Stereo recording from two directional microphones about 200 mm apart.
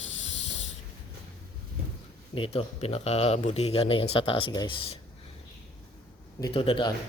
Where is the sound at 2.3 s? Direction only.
25° left (ahead or behind).